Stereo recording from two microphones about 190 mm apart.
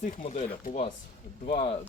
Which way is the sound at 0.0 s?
40° left (ahead or behind).